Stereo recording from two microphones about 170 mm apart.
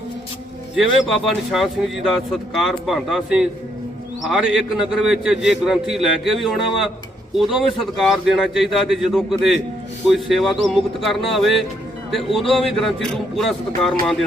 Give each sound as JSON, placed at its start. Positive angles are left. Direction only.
{"t": 0.8, "sound": "speech", "side_deg": 0}